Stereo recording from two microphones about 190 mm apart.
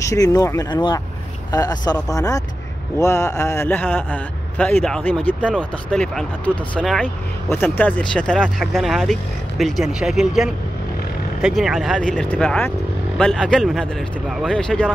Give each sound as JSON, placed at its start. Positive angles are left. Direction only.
{"t": 0.0, "sound": "speech", "side_deg": 15}